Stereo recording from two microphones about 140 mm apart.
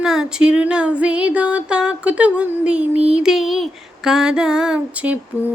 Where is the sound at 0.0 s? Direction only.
5° right (ahead or behind).